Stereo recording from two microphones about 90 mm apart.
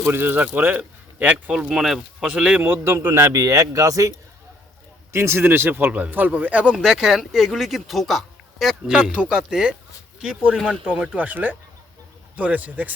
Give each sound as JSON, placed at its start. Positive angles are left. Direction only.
{"t": 0.0, "sound": "speech", "side_deg": -25}
{"t": 5.1, "sound": "speech", "side_deg": -25}
{"t": 6.7, "sound": "speech", "side_deg": -5}